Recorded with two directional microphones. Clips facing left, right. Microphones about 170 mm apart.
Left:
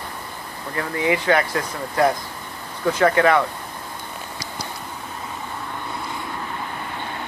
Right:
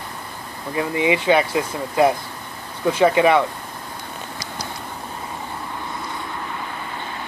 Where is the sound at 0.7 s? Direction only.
15° right (ahead or behind).